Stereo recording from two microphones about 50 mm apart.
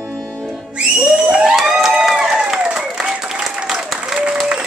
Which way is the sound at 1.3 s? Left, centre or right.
Centre.